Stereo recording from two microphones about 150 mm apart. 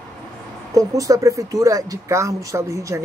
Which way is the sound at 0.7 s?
20° right (ahead or behind).